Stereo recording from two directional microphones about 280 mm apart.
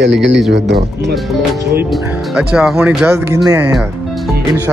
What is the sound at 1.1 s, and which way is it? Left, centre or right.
Speech, centre.